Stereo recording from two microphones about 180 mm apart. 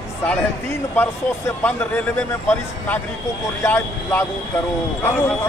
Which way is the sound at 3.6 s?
10° left (ahead or behind).